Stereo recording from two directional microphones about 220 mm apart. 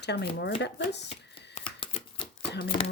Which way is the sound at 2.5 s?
45° left (ahead or behind).